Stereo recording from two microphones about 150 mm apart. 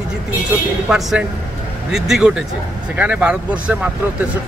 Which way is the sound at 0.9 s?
5° right (ahead or behind).